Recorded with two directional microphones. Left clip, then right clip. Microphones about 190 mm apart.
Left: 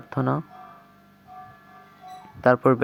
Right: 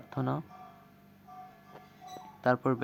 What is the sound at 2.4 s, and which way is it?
Speech, 30° left (ahead or behind).